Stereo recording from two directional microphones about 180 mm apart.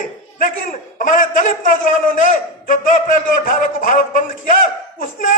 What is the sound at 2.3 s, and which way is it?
A man's voice, 45° left (ahead or behind).